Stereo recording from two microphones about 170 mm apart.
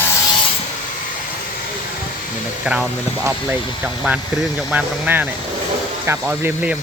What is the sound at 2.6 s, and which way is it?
Speech, 5° right (ahead or behind).